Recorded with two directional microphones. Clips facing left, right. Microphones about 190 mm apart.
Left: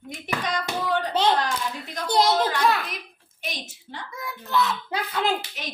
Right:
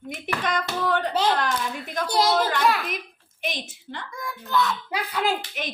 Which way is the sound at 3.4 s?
55° right (ahead or behind).